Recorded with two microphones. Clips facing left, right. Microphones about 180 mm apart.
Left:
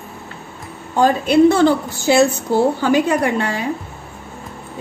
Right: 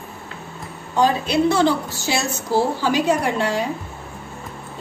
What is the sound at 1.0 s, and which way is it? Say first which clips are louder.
A woman's voice: left 5 dB; 50° left (ahead or behind).